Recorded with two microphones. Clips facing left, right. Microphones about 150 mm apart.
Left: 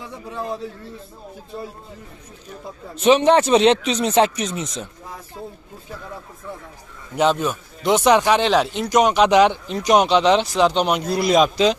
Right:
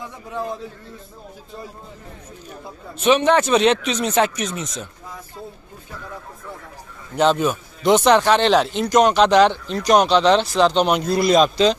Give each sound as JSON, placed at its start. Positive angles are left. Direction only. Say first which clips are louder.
{"t": 3.0, "sound": "speech", "louder": "left 2 dB", "side_deg": 30}
{"t": 7.2, "sound": "a man's voice", "louder": "right 1 dB", "side_deg": 0}